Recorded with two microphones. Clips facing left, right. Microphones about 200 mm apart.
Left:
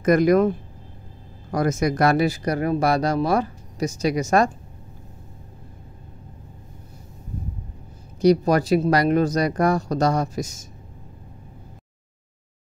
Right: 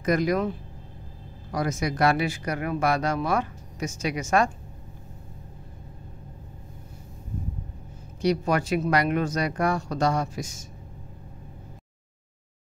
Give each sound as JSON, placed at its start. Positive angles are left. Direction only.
{"t": 0.0, "sound": "speech", "side_deg": 50}
{"t": 8.2, "sound": "speech", "side_deg": 40}